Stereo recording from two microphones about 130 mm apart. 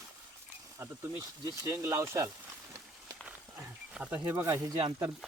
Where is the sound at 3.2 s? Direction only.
10° right (ahead or behind).